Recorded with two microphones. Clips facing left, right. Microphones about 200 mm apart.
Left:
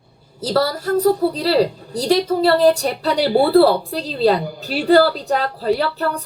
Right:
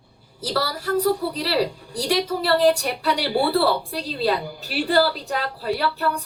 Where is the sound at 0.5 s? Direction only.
45° left (ahead or behind).